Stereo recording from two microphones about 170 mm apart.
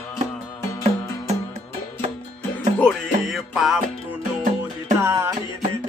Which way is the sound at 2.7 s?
5° left (ahead or behind).